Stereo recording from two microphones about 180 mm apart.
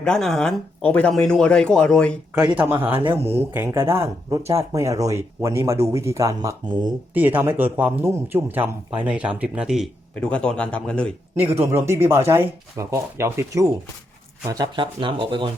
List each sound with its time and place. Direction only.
0.0 s speech: 5° left (ahead or behind)
2.3 s speech: 5° right (ahead or behind); by 6.9 s 25° right (ahead or behind)
7.1 s speech: 10° right (ahead or behind); by 11.1 s 5° left (ahead or behind)
11.3 s speech: 10° right (ahead or behind); by 15.4 s 30° right (ahead or behind)